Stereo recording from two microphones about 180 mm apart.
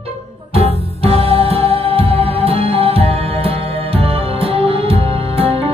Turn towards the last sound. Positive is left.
turn(degrees=-30)  # may be behind; listen again after turning